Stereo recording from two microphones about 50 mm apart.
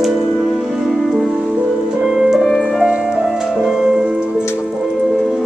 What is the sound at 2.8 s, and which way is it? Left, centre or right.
Music, centre.